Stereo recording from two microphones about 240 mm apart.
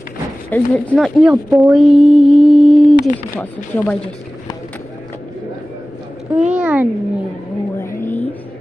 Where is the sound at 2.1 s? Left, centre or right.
Right.